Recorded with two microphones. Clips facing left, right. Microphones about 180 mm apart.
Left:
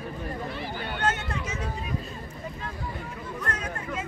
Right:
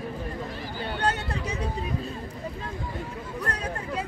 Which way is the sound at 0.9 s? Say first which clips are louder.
Right 1 dB; 35° right (ahead or behind).